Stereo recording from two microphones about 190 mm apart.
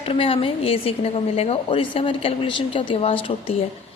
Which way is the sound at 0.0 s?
30° left (ahead or behind).